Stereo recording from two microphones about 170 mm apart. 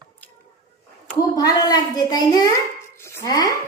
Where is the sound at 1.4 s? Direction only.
25° left (ahead or behind).